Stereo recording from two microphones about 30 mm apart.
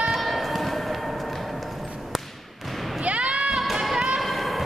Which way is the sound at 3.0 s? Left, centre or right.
Right.